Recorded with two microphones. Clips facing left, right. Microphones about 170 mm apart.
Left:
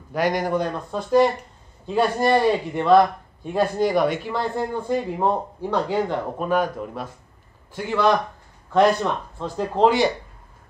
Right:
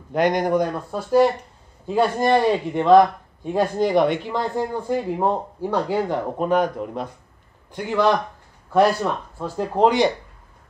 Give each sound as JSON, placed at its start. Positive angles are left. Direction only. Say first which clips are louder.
{"t": 0.1, "sound": "speech", "louder": "right 3 dB", "side_deg": -20}